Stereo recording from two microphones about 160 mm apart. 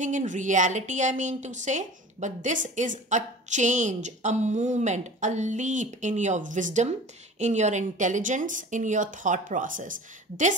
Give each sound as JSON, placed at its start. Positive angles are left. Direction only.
{"t": 0.0, "sound": "speech", "side_deg": -50}